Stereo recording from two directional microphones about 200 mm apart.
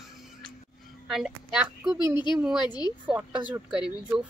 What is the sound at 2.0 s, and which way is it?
Speech, 20° left (ahead or behind).